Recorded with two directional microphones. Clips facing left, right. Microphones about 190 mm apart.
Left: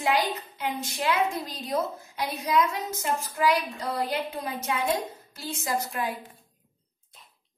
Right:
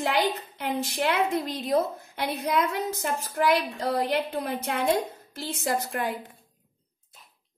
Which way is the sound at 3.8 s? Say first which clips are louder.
Right 4 dB; 60° right (ahead or behind).